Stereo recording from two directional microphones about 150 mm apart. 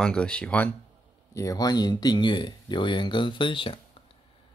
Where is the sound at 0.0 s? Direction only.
5° left (ahead or behind).